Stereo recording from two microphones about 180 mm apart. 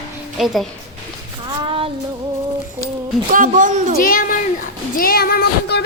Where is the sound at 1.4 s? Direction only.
25° right (ahead or behind).